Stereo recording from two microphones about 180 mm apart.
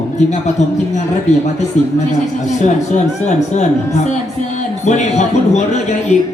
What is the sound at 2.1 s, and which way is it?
A man's voice, 40° left (ahead or behind).